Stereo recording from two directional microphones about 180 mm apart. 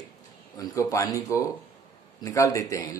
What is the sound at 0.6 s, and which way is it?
Speech, 20° left (ahead or behind).